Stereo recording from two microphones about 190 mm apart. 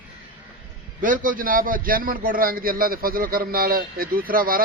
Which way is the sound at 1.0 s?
45° right (ahead or behind).